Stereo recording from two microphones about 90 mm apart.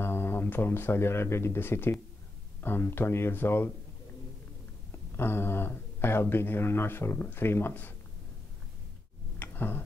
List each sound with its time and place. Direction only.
0.0 s speech: 25° left (ahead or behind)
5.1 s speech: 25° left (ahead or behind)
9.4 s tick: 25° left (ahead or behind)